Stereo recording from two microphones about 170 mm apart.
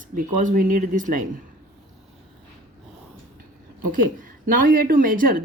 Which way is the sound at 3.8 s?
55° right (ahead or behind).